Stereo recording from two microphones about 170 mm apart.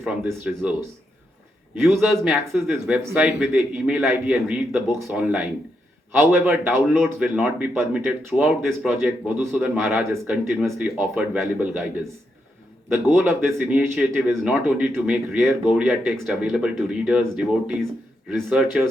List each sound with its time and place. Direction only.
0.3 s speech: 10° right (ahead or behind)
12.9 s speech: 15° right (ahead or behind)
18.4 s speech: 10° right (ahead or behind)